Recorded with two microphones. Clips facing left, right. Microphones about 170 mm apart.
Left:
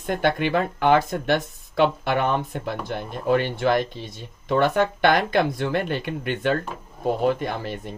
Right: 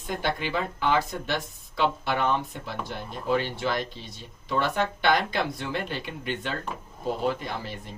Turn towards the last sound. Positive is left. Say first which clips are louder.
# left 6 dB
turn(degrees=55)  # may be behind; listen again after turning